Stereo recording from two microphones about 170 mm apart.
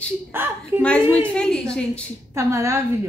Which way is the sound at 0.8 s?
5° left (ahead or behind).